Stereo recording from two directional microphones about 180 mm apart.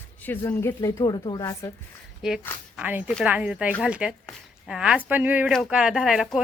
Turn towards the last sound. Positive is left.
turn(degrees=0)  # may be behind; listen again after turning